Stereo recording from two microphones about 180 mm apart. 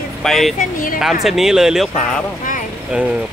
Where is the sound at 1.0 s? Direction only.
Centre (ahead or behind).